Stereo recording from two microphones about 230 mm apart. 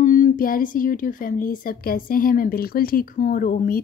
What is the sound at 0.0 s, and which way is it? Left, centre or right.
Speech, left.